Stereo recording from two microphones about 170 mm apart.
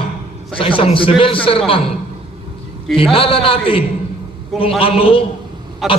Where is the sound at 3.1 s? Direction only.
35° left (ahead or behind).